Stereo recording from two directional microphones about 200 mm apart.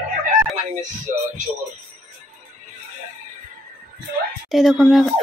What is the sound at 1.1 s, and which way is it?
Music, 40° right (ahead or behind).